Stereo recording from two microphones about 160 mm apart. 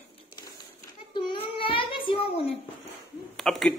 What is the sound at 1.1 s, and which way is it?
Child singing, 30° left (ahead or behind).